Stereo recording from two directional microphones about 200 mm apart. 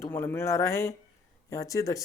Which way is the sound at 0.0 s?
10° left (ahead or behind).